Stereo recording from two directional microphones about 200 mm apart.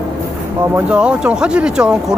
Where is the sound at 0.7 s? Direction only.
5° right (ahead or behind).